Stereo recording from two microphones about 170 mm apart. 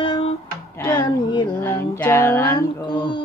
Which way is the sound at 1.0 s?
25° left (ahead or behind).